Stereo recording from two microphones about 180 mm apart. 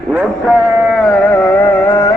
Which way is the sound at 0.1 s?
5° right (ahead or behind).